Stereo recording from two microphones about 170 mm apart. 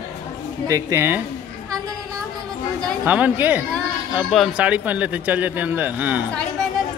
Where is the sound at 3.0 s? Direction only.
10° right (ahead or behind).